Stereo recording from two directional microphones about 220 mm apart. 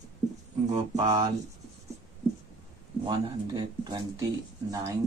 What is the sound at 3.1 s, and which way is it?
Speech, 20° right (ahead or behind).